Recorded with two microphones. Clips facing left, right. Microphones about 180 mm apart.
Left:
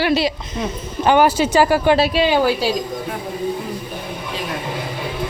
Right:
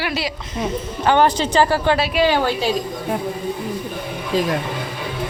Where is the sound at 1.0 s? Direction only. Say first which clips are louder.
Left 2 dB; 10° left (ahead or behind).